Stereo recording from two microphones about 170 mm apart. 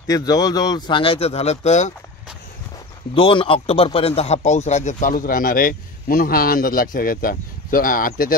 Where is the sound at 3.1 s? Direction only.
30° left (ahead or behind).